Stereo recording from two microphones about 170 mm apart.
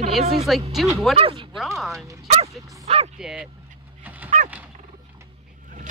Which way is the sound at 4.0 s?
10° right (ahead or behind).